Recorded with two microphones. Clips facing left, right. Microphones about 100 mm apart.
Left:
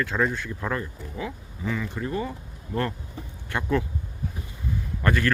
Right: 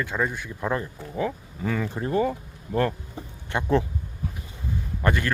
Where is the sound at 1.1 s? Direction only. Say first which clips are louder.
Right 8 dB; 45° right (ahead or behind).